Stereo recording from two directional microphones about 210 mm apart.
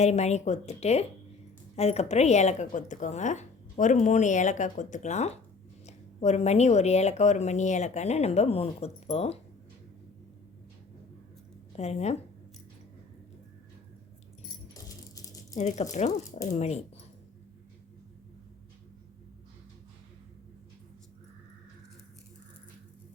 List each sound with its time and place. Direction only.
0.0 s a woman's voice: 30° left (ahead or behind)
11.8 s a woman's voice: 30° left (ahead or behind)
14.7 s rattle: 15° left (ahead or behind)
15.5 s a woman's voice: 35° left (ahead or behind)